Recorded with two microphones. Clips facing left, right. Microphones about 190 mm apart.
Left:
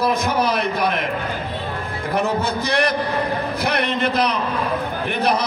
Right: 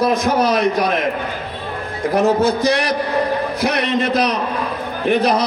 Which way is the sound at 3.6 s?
60° left (ahead or behind).